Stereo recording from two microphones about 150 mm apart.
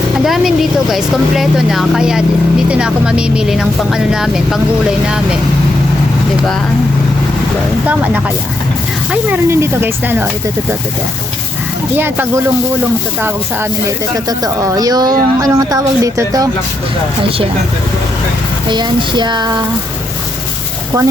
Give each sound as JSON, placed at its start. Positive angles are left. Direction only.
{"t": 0.3, "sound": "speech", "side_deg": 0}
{"t": 7.9, "sound": "speech", "side_deg": -10}
{"t": 9.3, "sound": "speech", "side_deg": -15}
{"t": 11.9, "sound": "speech", "side_deg": -15}
{"t": 14.3, "sound": "speech", "side_deg": -25}
{"t": 18.7, "sound": "speech", "side_deg": -30}